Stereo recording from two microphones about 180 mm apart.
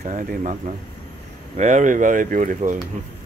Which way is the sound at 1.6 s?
40° right (ahead or behind).